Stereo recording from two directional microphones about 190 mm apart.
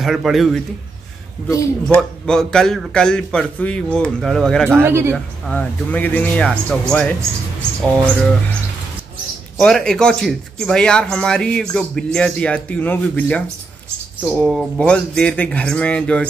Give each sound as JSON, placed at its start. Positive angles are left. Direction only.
{"t": 0.0, "sound": "speech", "side_deg": 0}
{"t": 1.5, "sound": "speech", "side_deg": 15}
{"t": 2.0, "sound": "speech", "side_deg": 5}
{"t": 4.8, "sound": "speech", "side_deg": -15}
{"t": 5.1, "sound": "speech", "side_deg": 5}
{"t": 9.6, "sound": "speech", "side_deg": 5}
{"t": 14.4, "sound": "speech", "side_deg": 0}